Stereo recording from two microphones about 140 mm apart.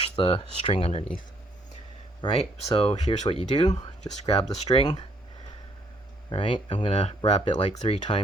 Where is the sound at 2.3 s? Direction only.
45° left (ahead or behind).